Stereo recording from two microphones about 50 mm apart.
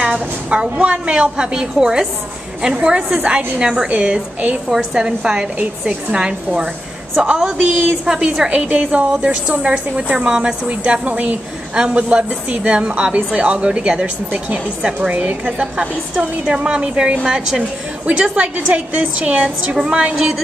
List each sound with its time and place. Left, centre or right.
0.0 s a woman's voice: right
4.6 s a woman's voice: centre
7.6 s a woman's voice: right
8.0 s a woman's voice: centre
8.5 s a woman's voice: right
15.6 s a woman's voice: centre